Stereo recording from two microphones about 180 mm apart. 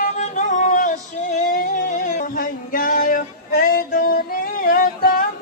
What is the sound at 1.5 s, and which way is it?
Music, 50° left (ahead or behind).